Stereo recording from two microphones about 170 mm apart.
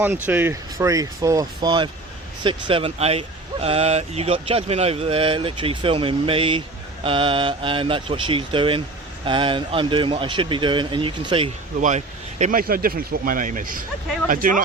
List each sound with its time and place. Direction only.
0.3 s a man's voice: 10° right (ahead or behind); by 11.5 s 30° right (ahead or behind)
11.8 s speech: 45° right (ahead or behind)